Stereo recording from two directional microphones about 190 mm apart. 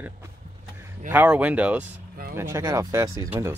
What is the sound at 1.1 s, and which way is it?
Speech, 10° right (ahead or behind).